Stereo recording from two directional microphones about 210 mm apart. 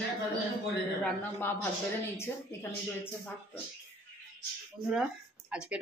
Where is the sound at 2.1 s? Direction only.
10° left (ahead or behind).